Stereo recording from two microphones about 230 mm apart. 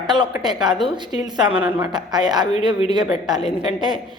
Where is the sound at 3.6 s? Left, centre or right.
Centre.